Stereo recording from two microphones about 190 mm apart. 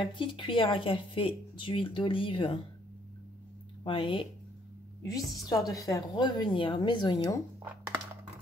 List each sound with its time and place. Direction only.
0.0 s speech: 25° left (ahead or behind)
3.8 s speech: 25° left (ahead or behind)